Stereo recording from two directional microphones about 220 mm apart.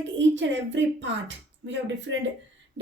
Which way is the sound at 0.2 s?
55° right (ahead or behind).